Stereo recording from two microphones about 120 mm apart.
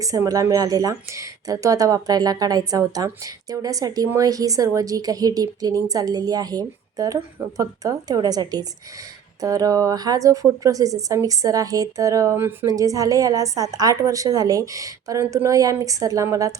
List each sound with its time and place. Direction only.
0.0 s a woman's voice: 30° right (ahead or behind)